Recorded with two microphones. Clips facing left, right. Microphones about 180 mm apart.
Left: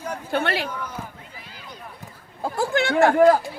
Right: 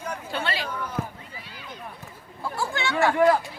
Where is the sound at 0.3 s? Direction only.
55° left (ahead or behind).